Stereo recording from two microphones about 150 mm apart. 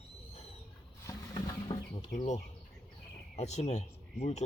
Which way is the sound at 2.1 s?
50° left (ahead or behind).